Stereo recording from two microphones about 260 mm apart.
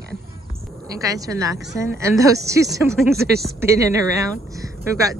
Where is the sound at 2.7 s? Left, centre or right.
Centre.